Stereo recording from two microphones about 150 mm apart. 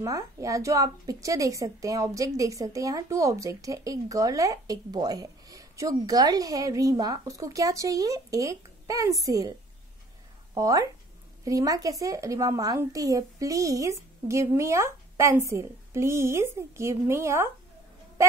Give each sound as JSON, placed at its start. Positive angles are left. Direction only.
{"t": 0.0, "sound": "a woman's voice", "side_deg": -20}